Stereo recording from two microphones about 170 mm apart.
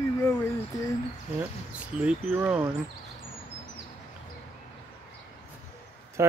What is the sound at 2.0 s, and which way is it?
Speech, 5° right (ahead or behind).